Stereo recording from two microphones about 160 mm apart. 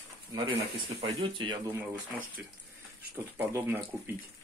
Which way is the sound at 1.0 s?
30° right (ahead or behind).